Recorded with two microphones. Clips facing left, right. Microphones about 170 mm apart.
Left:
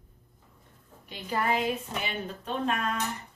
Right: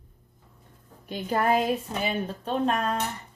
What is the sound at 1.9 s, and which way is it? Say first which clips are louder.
Speech: right 5 dB; 35° right (ahead or behind).